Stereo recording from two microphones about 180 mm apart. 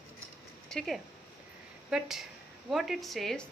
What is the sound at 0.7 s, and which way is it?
A woman's voice, centre (ahead or behind).